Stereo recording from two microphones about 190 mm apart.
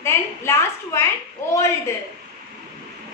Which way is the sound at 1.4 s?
15° left (ahead or behind).